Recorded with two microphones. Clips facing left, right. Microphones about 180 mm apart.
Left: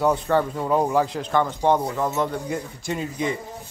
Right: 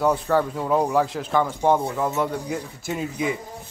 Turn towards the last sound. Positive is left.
turn(degrees=-5)  # may be behind; listen again after turning